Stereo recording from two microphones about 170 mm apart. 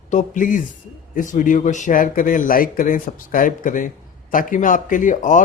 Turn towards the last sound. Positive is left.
turn(degrees=50)  # may be behind; listen again after turning